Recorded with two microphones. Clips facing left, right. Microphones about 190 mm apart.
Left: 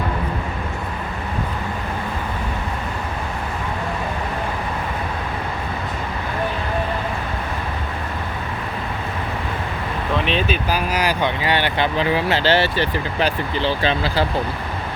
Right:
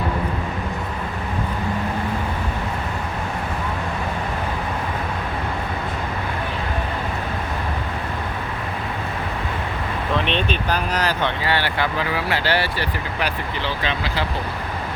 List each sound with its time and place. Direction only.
10.2 s speech: 5° left (ahead or behind); by 14.3 s 35° left (ahead or behind)